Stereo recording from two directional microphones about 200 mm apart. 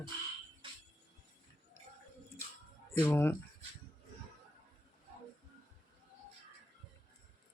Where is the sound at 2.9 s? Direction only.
10° left (ahead or behind).